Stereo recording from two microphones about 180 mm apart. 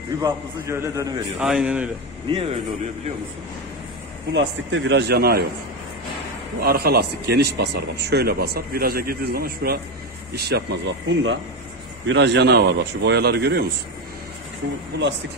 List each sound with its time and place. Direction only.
0.2 s a man's voice: 15° right (ahead or behind)
1.4 s a man's voice: 5° right (ahead or behind)
2.3 s a man's voice: 35° right (ahead or behind)
4.3 s a man's voice: 90° right; by 5.4 s 65° right (ahead or behind)
6.6 s a man's voice: 60° right (ahead or behind)